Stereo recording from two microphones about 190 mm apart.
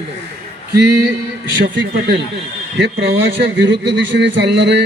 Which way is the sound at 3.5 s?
70° right (ahead or behind).